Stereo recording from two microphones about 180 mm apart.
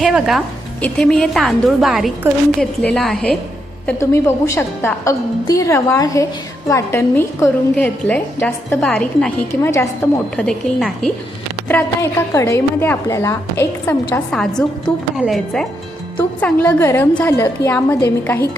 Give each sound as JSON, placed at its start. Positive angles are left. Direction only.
{"t": 0.0, "sound": "a woman's voice", "side_deg": 0}
{"t": 3.8, "sound": "a woman's voice", "side_deg": 15}
{"t": 11.7, "sound": "a woman's voice", "side_deg": 15}